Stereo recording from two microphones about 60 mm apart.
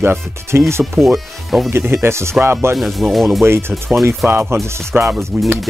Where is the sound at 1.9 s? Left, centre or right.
Right.